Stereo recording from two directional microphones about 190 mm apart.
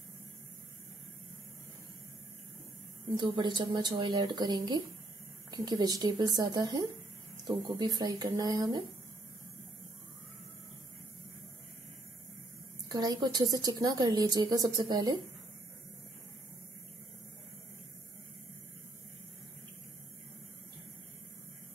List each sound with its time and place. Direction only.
3.2 s a woman's voice: 25° right (ahead or behind)
12.8 s a woman's voice: 20° right (ahead or behind)